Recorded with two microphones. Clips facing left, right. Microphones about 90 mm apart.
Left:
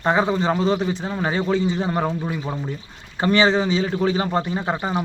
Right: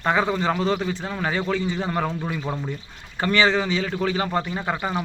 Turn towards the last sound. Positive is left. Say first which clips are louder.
# left 2 dB
turn(degrees=25)  # may be behind; listen again after turning